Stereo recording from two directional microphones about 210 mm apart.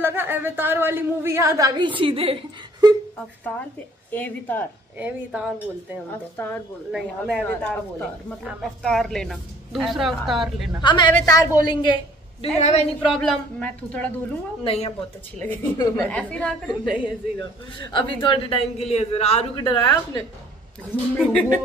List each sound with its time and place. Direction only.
0.0 s a woman's voice: 10° right (ahead or behind); by 2.9 s 25° right (ahead or behind)
4.1 s a woman's voice: 10° left (ahead or behind)
4.9 s speech: 5° right (ahead or behind)
6.4 s a woman's voice: 10° left (ahead or behind)
6.9 s a woman's voice: 5° right (ahead or behind)
8.5 s a woman's voice: centre (ahead or behind)
10.8 s a man's voice: 20° left (ahead or behind)
13.2 s a woman's voice: 5° left (ahead or behind)
14.6 s a man's voice: 25° left (ahead or behind)
15.3 s a woman's voice: 10° left (ahead or behind)
17.0 s a man's voice: 25° left (ahead or behind)
20.9 s a woman's voice: 10° left (ahead or behind)